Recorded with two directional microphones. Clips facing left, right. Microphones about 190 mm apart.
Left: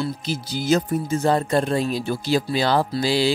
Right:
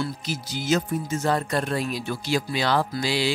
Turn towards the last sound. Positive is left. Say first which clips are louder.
# left 5 dB
turn(degrees=35)  # may be behind; listen again after turning